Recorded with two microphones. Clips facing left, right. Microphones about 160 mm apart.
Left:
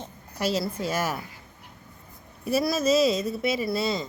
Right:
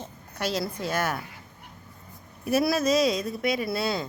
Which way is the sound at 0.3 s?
5° left (ahead or behind).